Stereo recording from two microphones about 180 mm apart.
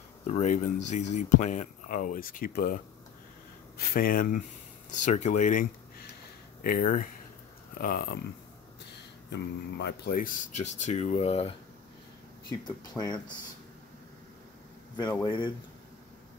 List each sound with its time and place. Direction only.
0.3 s speech: 40° left (ahead or behind); by 8.2 s 55° left (ahead or behind)
9.3 s speech: 70° left (ahead or behind); by 11.5 s 35° left (ahead or behind)
12.4 s speech: 20° left (ahead or behind)
15.2 s speech: 25° left (ahead or behind)